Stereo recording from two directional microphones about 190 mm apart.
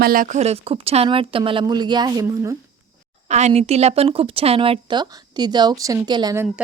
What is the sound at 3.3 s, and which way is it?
Speech, 35° right (ahead or behind).